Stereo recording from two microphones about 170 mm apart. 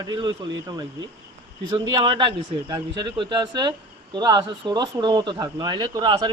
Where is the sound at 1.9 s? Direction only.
25° right (ahead or behind).